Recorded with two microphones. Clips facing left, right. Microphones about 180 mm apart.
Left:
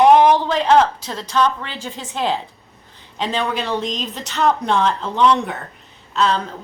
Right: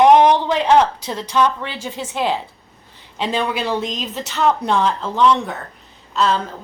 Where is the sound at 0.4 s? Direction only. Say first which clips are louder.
Even; 15° right (ahead or behind).